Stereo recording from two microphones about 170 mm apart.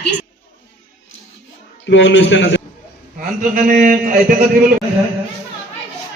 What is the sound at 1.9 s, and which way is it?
Speech, 90° left.